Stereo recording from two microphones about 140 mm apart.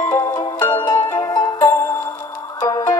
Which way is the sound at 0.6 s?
30° left (ahead or behind).